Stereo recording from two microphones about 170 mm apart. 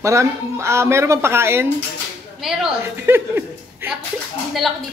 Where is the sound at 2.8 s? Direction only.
15° right (ahead or behind).